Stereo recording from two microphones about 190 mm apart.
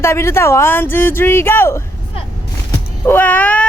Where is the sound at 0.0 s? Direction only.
15° left (ahead or behind).